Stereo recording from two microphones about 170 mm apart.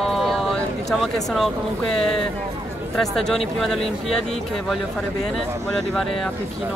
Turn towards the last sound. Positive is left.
turn(degrees=0)  # may be behind; listen again after turning